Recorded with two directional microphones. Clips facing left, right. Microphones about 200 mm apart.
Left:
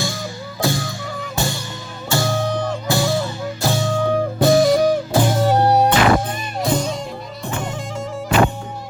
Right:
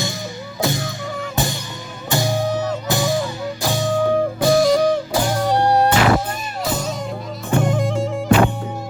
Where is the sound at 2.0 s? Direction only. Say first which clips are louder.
Even; 15° right (ahead or behind).